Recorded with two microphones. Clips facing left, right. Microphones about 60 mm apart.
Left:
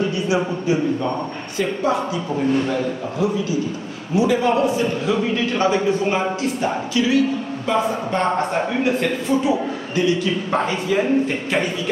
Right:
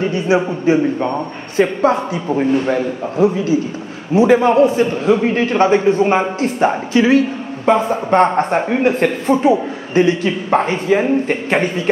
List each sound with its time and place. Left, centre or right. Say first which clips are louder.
0.0 s speech: right 5 dB; right